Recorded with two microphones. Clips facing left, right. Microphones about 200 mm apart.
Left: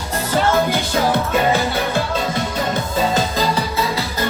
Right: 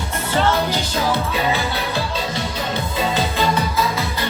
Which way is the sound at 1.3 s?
45° left (ahead or behind).